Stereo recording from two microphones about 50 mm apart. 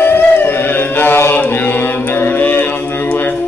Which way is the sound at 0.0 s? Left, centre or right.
Left.